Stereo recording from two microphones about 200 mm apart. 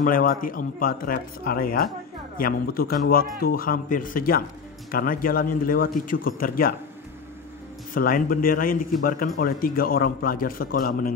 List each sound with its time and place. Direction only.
0.0 s a man's voice: 45° left (ahead or behind)
7.9 s a man's voice: 45° left (ahead or behind)